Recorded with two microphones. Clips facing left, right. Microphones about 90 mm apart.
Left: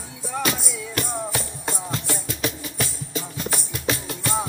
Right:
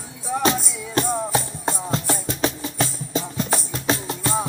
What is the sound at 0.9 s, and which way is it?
Music, 25° right (ahead or behind).